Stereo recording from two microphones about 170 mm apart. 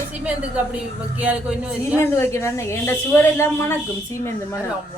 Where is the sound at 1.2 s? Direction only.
10° right (ahead or behind).